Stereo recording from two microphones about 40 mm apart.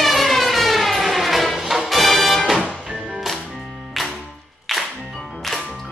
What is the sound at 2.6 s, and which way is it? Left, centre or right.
Music, right.